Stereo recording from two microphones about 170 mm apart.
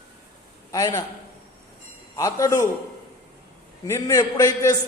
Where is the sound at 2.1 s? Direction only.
20° left (ahead or behind).